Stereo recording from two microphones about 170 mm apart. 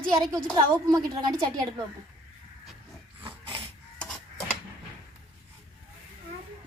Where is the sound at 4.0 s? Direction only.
5° left (ahead or behind).